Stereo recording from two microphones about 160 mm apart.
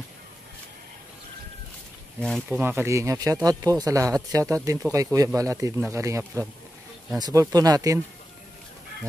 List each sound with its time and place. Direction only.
2.1 s speech: 5° left (ahead or behind)
2.5 s speech: 15° right (ahead or behind)